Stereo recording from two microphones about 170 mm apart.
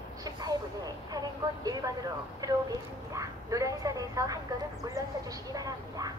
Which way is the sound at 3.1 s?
20° right (ahead or behind).